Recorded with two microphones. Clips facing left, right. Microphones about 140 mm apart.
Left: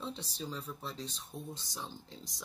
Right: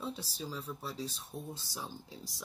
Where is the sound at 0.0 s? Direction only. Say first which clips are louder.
Right 1 dB; 5° right (ahead or behind).